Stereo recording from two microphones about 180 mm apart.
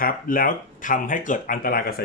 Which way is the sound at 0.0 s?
50° left (ahead or behind).